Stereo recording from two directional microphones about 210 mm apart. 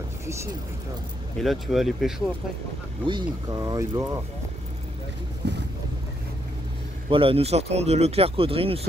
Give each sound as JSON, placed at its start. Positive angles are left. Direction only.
{"t": 1.4, "sound": "speech", "side_deg": 0}
{"t": 3.1, "sound": "speech", "side_deg": -20}
{"t": 5.4, "sound": "boat", "side_deg": -55}
{"t": 7.1, "sound": "speech", "side_deg": -25}